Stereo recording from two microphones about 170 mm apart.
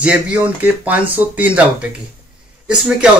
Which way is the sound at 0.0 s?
5° right (ahead or behind).